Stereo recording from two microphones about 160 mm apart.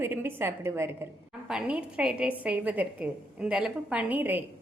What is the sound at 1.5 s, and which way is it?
A woman's voice, 5° right (ahead or behind).